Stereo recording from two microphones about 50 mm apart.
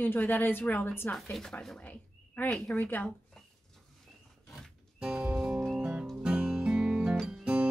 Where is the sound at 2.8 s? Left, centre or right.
Left.